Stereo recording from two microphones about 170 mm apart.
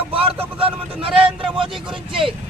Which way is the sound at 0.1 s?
30° right (ahead or behind).